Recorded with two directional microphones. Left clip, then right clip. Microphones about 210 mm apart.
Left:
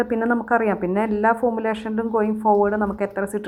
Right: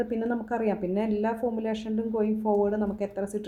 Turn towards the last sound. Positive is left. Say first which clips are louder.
# left 7 dB
turn(degrees=15)  # may be behind; listen again after turning